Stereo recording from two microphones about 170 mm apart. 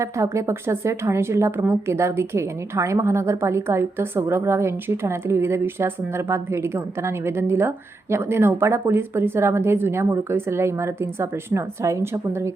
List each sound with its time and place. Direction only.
0.0 s a woman's voice: 15° right (ahead or behind)